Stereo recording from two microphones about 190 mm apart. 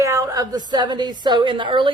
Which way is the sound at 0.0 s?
15° right (ahead or behind).